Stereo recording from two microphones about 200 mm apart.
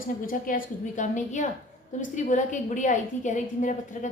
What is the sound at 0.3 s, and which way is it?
A woman's voice, 45° left (ahead or behind).